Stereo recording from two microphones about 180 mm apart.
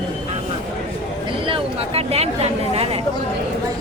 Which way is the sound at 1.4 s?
30° right (ahead or behind).